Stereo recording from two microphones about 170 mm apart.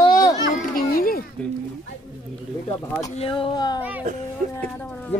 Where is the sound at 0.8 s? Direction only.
60° left (ahead or behind).